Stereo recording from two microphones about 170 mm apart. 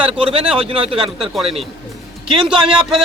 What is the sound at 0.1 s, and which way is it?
Speech, 30° right (ahead or behind).